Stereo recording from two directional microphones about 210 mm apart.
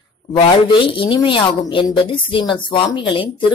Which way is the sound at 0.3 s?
25° left (ahead or behind).